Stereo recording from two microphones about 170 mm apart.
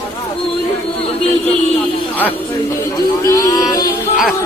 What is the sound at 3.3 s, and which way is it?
Speech, 20° left (ahead or behind).